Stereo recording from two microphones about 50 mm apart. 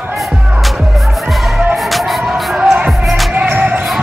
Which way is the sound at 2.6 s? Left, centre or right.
Right.